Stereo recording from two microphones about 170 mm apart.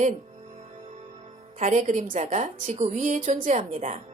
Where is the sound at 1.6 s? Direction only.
45° right (ahead or behind).